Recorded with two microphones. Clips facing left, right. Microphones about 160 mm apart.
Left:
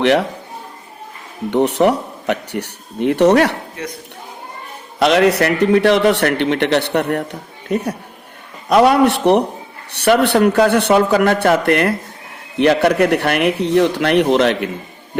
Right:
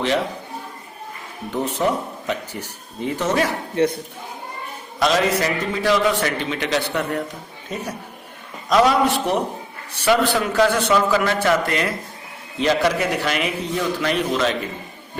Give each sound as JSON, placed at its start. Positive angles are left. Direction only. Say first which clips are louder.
{"t": 0.0, "sound": "a man's voice", "louder": "left 7 dB", "side_deg": 70}
{"t": 1.5, "sound": "a man's voice", "louder": "left 8 dB", "side_deg": 70}
{"t": 3.8, "sound": "speech", "louder": "right 15 dB", "side_deg": -30}
{"t": 4.9, "sound": "a man's voice", "louder": "left 6 dB", "side_deg": 65}